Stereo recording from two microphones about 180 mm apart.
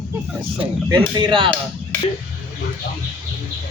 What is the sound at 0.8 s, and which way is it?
Speech, 20° right (ahead or behind).